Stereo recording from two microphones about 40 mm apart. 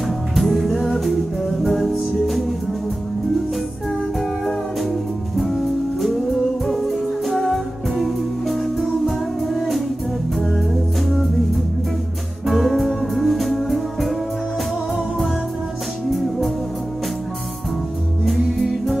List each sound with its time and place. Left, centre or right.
0.4 s music: centre
5.4 s music: centre
16.1 s music: centre
18.2 s music: centre